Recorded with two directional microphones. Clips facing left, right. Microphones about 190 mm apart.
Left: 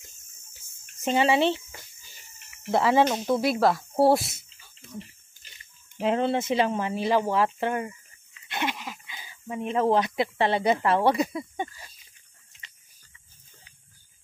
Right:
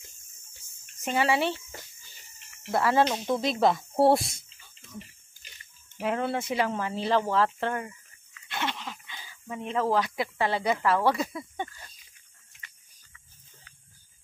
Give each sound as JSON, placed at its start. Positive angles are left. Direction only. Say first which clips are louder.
{"t": 1.0, "sound": "speech", "louder": "left 4 dB", "side_deg": 20}
{"t": 2.7, "sound": "speech", "louder": "left 3 dB", "side_deg": 20}
{"t": 3.0, "sound": "speech", "louder": "left 3 dB", "side_deg": 5}
{"t": 5.9, "sound": "speech", "louder": "left 4 dB", "side_deg": 25}